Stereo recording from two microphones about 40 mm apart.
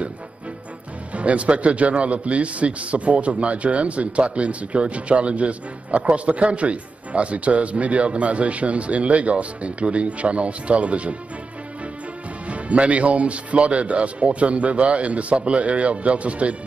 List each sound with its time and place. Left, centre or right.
1.1 s a man's voice: right
12.4 s a man's voice: right